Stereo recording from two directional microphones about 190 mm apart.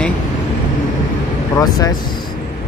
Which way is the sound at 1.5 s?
20° left (ahead or behind).